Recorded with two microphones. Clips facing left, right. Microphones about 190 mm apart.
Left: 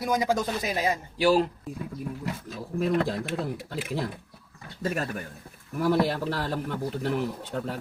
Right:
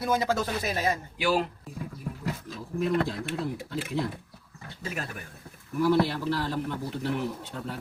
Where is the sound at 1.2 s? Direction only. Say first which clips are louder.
Left 5 dB; 35° left (ahead or behind).